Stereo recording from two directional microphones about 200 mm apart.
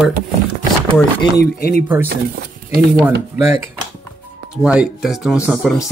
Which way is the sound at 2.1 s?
50° right (ahead or behind).